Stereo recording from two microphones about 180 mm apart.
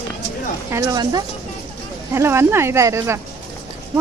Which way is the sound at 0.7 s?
20° right (ahead or behind).